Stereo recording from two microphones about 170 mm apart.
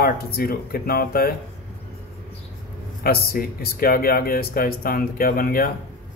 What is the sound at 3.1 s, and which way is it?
Speech, 60° left (ahead or behind).